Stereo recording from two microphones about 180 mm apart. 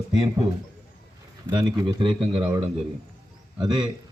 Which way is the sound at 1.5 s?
25° right (ahead or behind).